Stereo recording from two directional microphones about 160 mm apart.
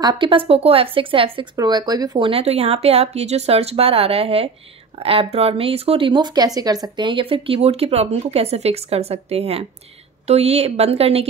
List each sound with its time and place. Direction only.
0.0 s speech: 30° right (ahead or behind)